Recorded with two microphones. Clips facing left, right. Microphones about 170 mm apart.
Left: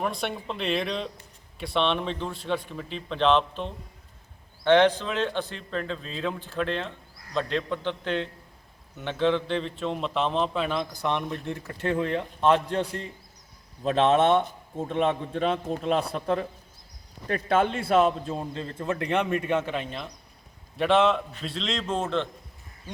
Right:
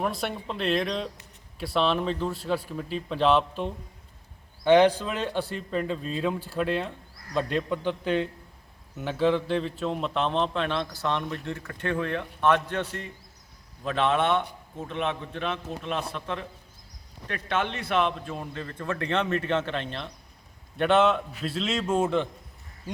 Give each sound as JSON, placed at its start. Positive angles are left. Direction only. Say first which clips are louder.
{"t": 0.0, "sound": "a man's voice", "louder": "even", "side_deg": 0}
{"t": 13.8, "sound": "speech", "louder": "left 4 dB", "side_deg": 25}
{"t": 15.3, "sound": "a man's voice", "louder": "left 5 dB", "side_deg": 45}
{"t": 17.3, "sound": "speech", "louder": "left 5 dB", "side_deg": 30}
{"t": 17.9, "sound": "a man's voice", "louder": "left 4 dB", "side_deg": 40}
{"t": 18.3, "sound": "a man's voice", "louder": "left 3 dB", "side_deg": 25}